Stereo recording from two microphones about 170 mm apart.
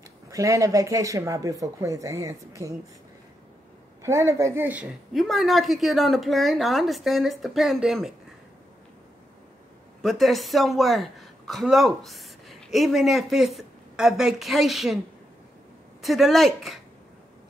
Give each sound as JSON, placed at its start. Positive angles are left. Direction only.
{"t": 0.3, "sound": "speech", "side_deg": -20}
{"t": 4.0, "sound": "a woman's voice", "side_deg": -15}
{"t": 5.1, "sound": "a woman's voice", "side_deg": 0}
{"t": 10.0, "sound": "a woman's voice", "side_deg": 0}
{"t": 16.0, "sound": "a woman's voice", "side_deg": 0}